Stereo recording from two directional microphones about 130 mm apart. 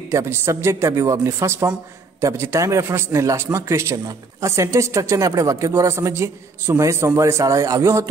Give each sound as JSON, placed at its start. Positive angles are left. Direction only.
{"t": 0.1, "sound": "a man's voice", "side_deg": -20}